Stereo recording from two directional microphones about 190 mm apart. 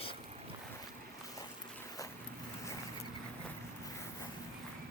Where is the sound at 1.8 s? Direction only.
15° left (ahead or behind).